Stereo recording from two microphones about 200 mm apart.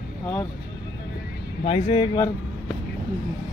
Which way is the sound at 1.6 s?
30° left (ahead or behind).